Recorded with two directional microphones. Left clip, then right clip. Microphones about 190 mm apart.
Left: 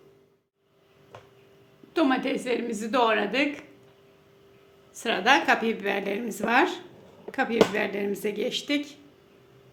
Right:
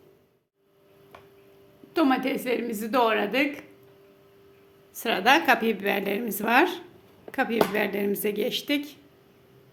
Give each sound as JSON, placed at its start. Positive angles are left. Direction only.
{"t": 1.9, "sound": "a woman's voice", "side_deg": -10}
{"t": 4.9, "sound": "a woman's voice", "side_deg": -15}